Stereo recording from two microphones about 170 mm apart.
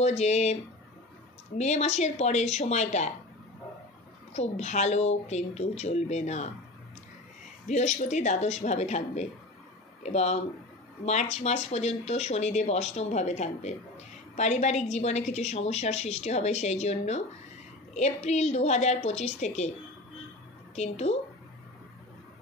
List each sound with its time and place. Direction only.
0.0 s speech: 40° left (ahead or behind)
1.6 s speech: 40° left (ahead or behind)
4.3 s speech: 40° left (ahead or behind)
7.6 s speech: 45° left (ahead or behind)
20.7 s speech: 40° left (ahead or behind)